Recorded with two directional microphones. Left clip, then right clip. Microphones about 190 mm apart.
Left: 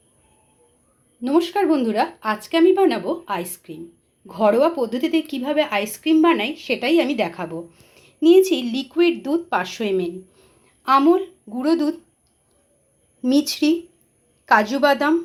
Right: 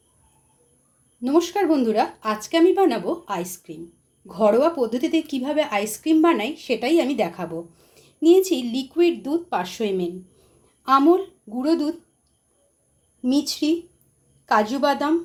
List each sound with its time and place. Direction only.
1.2 s a woman's voice: centre (ahead or behind)
13.2 s a woman's voice: 10° left (ahead or behind)